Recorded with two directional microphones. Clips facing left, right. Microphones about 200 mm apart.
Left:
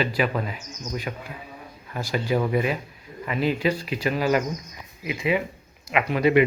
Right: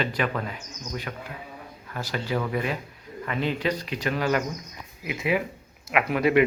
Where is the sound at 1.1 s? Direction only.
20° left (ahead or behind).